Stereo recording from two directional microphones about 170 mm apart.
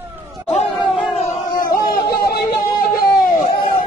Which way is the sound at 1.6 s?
55° left (ahead or behind).